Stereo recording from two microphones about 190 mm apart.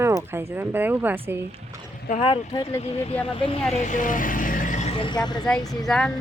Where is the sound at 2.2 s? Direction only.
25° left (ahead or behind).